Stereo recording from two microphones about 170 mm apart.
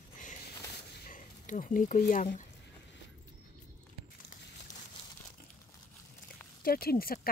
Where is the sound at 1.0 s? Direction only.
50° left (ahead or behind).